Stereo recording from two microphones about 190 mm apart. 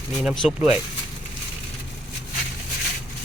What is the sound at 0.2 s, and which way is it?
Speech, centre (ahead or behind).